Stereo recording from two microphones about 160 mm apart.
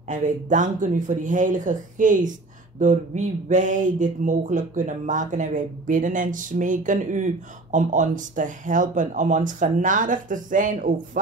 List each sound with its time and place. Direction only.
0.1 s speech: 50° right (ahead or behind)